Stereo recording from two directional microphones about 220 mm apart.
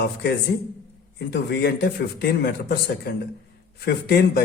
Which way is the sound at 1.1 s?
50° left (ahead or behind).